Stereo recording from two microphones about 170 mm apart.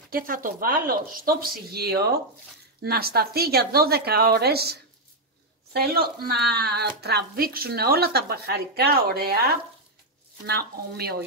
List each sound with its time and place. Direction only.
0.1 s speech: 55° right (ahead or behind)